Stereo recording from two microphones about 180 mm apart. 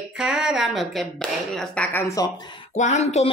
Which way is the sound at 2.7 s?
40° left (ahead or behind).